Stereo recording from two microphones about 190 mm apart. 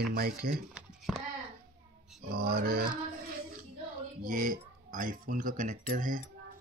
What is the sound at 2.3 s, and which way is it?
Speech, 50° right (ahead or behind).